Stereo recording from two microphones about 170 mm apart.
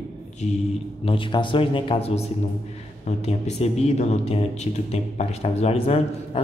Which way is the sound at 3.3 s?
40° left (ahead or behind).